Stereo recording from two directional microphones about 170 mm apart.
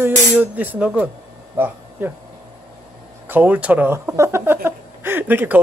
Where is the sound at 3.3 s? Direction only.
10° right (ahead or behind).